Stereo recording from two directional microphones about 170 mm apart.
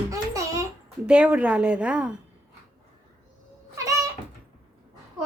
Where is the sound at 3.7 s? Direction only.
20° right (ahead or behind).